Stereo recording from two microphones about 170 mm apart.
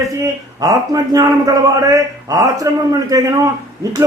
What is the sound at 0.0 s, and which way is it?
A man's voice, 20° right (ahead or behind).